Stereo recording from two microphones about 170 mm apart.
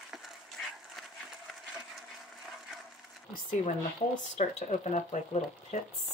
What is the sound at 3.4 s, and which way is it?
Speech, 45° left (ahead or behind).